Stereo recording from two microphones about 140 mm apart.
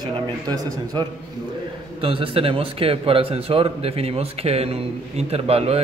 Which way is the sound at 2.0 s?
40° right (ahead or behind).